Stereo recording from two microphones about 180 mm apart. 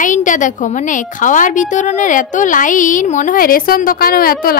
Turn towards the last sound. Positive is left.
turn(degrees=55)  # may be behind; listen again after turning